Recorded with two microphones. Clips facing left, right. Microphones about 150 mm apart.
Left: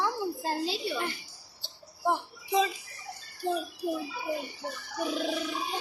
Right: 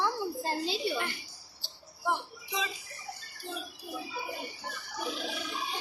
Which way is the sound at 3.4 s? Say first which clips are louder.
Left 11 dB; 50° left (ahead or behind).